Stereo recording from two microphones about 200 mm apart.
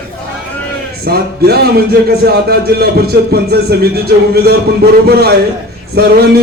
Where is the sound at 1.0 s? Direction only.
50° right (ahead or behind).